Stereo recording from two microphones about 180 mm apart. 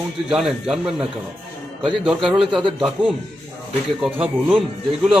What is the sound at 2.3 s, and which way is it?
Speech, 25° right (ahead or behind).